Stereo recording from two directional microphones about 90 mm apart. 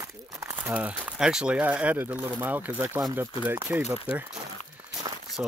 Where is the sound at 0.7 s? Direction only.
15° right (ahead or behind).